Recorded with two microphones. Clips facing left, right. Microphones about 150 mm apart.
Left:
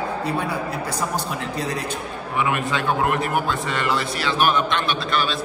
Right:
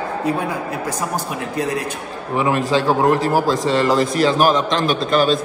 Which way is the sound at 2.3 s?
35° right (ahead or behind).